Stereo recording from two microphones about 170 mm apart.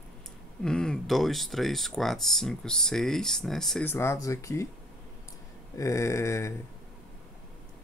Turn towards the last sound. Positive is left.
turn(degrees=15)  # may be behind; listen again after turning